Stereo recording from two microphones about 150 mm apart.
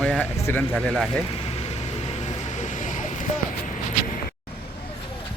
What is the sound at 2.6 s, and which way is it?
Vehicle, 55° left (ahead or behind).